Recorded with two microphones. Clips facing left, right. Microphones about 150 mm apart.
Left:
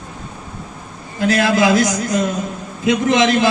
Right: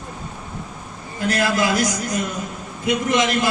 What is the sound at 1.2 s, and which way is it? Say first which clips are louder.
A man's voice: left 5 dB; 90° left.